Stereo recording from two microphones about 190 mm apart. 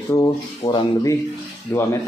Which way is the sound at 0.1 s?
20° left (ahead or behind).